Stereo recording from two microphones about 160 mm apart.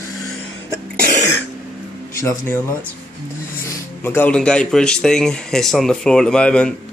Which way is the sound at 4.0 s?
15° left (ahead or behind).